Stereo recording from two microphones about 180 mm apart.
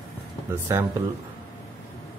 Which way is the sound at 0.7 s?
15° right (ahead or behind).